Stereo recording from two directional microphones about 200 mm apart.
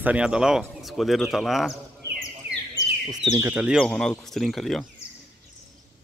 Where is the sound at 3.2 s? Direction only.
15° right (ahead or behind).